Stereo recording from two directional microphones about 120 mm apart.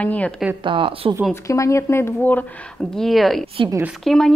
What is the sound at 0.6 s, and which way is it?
Speech, 45° right (ahead or behind).